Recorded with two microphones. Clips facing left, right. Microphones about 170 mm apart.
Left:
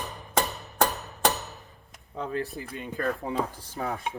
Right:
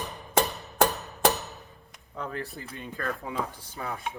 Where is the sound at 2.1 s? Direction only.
20° left (ahead or behind).